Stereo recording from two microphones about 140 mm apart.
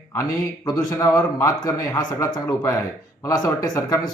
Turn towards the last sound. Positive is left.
turn(degrees=25)  # may be behind; listen again after turning